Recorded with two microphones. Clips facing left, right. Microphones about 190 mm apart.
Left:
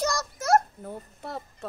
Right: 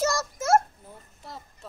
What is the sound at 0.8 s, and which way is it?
Speech, 60° left (ahead or behind).